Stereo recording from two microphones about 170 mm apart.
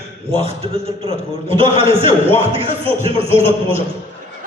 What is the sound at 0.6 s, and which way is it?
A man's voice, 30° right (ahead or behind).